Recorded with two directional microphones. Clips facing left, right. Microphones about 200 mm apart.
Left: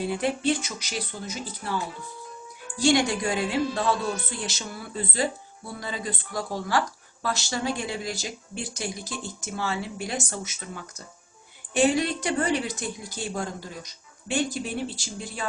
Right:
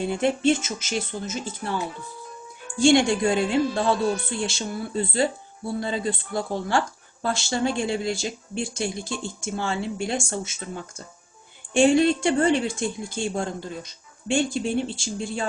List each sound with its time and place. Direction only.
0.0 s speech: 25° right (ahead or behind)
2.7 s speech: 25° right (ahead or behind)